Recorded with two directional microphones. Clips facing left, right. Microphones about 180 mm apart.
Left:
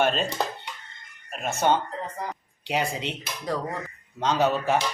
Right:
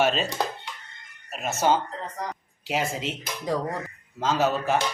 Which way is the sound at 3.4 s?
15° right (ahead or behind).